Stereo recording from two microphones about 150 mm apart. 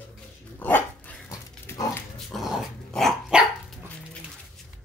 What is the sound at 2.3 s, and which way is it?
Dog, centre (ahead or behind).